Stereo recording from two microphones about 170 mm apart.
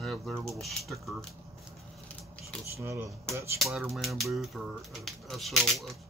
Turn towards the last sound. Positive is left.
turn(degrees=0)  # may be behind; listen again after turning